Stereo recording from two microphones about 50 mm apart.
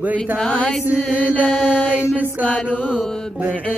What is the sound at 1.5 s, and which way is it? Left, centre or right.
Mantra, left.